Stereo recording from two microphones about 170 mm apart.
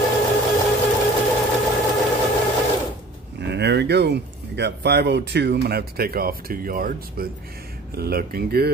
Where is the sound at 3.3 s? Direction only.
85° right.